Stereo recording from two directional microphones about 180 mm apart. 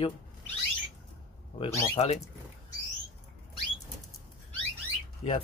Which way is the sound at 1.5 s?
30° left (ahead or behind).